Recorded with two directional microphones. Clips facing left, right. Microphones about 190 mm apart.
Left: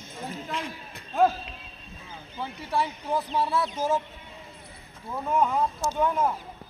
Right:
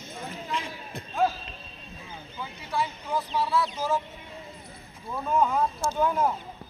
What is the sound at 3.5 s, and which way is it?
Speech, 50° left (ahead or behind).